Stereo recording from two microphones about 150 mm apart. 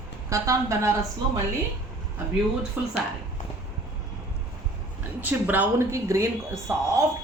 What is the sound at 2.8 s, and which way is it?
Speech, 10° right (ahead or behind).